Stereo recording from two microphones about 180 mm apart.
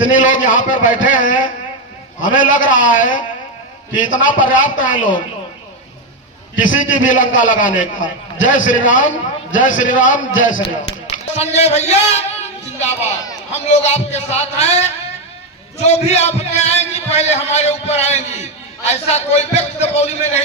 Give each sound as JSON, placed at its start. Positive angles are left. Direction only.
{"t": 0.0, "sound": "a man's voice", "side_deg": 45}
{"t": 6.6, "sound": "a man's voice", "side_deg": 45}